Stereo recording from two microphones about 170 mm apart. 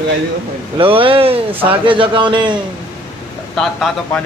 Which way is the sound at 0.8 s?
30° right (ahead or behind).